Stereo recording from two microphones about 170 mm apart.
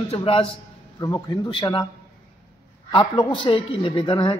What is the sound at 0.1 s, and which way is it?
A woman's voice, 30° left (ahead or behind).